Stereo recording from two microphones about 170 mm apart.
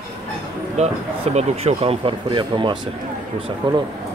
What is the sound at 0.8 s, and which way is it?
Speech, 40° right (ahead or behind).